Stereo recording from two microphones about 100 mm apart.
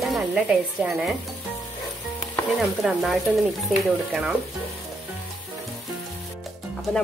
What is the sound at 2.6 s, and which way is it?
Speech, centre (ahead or behind).